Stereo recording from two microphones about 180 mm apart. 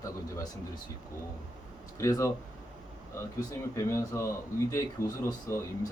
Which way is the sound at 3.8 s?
15° left (ahead or behind).